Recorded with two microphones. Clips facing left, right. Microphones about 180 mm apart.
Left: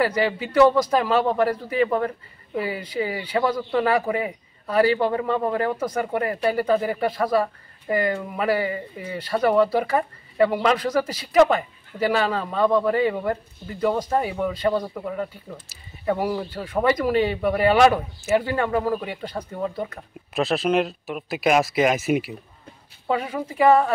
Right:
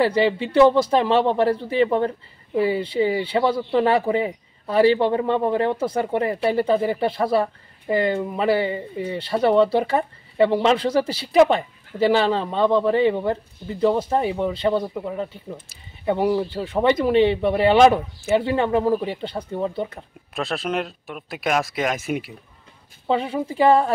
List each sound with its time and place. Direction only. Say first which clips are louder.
0.0 s a man's voice: right 3 dB; 30° right (ahead or behind)
20.3 s speech: left 4 dB; 5° left (ahead or behind)
23.0 s a man's voice: right 3 dB; 25° right (ahead or behind)